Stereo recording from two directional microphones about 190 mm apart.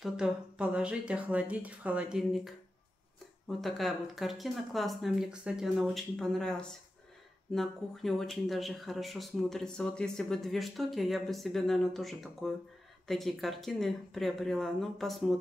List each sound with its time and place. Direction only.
0.0 s speech: 5° right (ahead or behind)